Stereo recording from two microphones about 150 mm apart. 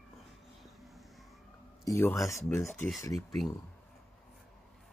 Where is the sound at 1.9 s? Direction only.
15° left (ahead or behind).